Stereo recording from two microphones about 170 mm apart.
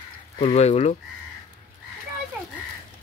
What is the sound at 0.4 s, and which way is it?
Speech, 40° left (ahead or behind).